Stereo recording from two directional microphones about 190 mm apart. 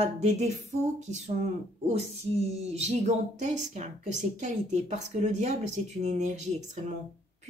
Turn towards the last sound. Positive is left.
turn(degrees=-40)  # may be behind; listen again after turning